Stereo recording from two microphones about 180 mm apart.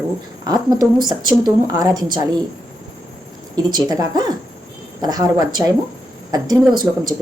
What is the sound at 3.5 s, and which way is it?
A woman's voice, 20° right (ahead or behind).